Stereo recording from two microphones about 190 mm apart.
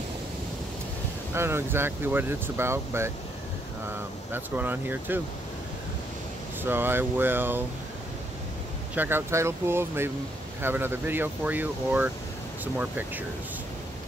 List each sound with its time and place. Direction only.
1.3 s speech: 15° right (ahead or behind)
4.3 s speech: 10° right (ahead or behind)
6.6 s speech: 10° right (ahead or behind)
8.9 s speech: 10° right (ahead or behind)